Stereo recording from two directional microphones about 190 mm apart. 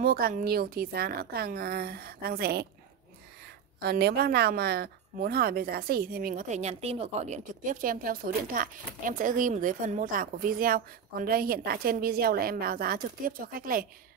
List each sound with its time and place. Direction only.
0.0 s speech: 50° right (ahead or behind)
3.8 s speech: 60° right (ahead or behind)